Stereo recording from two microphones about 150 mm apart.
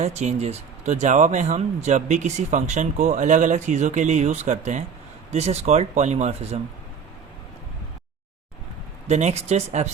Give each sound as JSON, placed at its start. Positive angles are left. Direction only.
{"t": 0.0, "sound": "speech", "side_deg": -50}
{"t": 9.0, "sound": "speech", "side_deg": -50}